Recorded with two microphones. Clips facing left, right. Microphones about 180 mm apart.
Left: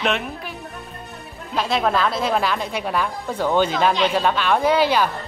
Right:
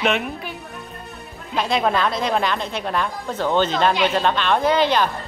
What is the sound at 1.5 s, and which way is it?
A woman's voice, centre (ahead or behind).